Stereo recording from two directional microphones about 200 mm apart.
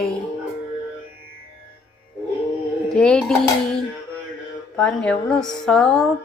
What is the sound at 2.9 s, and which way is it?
Music, 5° left (ahead or behind).